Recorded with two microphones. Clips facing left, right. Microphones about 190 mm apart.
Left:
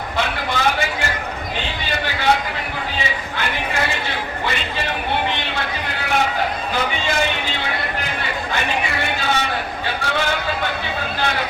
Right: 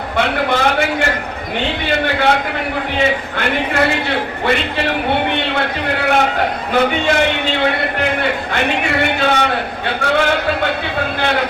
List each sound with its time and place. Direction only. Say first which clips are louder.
0.2 s a man's voice: right 6 dB; 60° right (ahead or behind)